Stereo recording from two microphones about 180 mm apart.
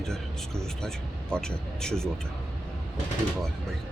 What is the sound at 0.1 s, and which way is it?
Speech, 5° left (ahead or behind).